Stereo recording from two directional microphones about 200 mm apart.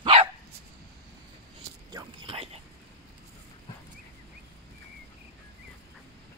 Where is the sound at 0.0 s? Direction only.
30° right (ahead or behind).